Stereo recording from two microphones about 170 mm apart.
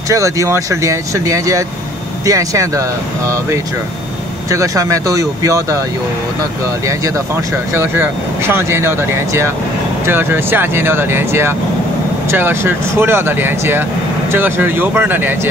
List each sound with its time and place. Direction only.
0.1 s speech: 20° right (ahead or behind)
4.5 s speech: 20° right (ahead or behind)
7.7 s speech: 15° right (ahead or behind)